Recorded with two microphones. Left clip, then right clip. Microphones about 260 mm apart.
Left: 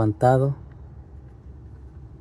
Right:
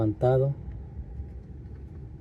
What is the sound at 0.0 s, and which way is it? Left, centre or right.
Speech, left.